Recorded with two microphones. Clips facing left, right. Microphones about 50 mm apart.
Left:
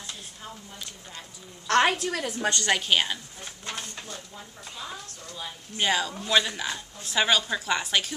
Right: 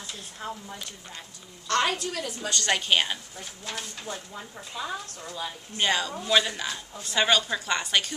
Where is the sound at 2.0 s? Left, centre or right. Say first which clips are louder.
Left 4 dB; left.